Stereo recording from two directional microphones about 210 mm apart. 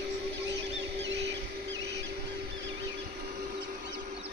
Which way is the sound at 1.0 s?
55° right (ahead or behind).